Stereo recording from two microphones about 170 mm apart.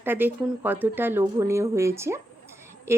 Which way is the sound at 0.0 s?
10° right (ahead or behind).